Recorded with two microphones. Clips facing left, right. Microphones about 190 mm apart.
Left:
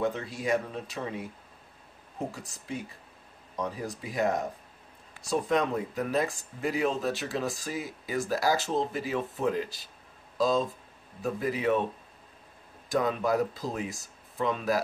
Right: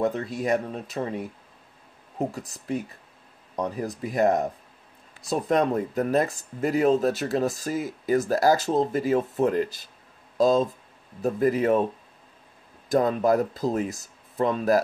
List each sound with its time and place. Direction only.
0.0 s speech: 40° right (ahead or behind)
3.5 s speech: 45° right (ahead or behind)
12.9 s speech: 40° right (ahead or behind)